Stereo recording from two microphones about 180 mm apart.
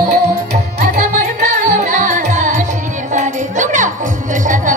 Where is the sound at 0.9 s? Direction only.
45° right (ahead or behind).